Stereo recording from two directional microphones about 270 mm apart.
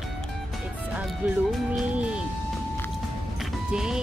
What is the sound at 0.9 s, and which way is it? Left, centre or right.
Music, centre.